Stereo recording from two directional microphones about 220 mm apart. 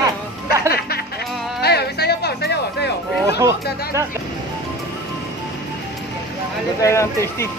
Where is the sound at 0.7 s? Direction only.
45° left (ahead or behind).